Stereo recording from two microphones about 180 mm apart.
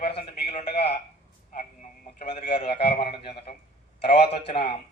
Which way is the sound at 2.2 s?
35° left (ahead or behind).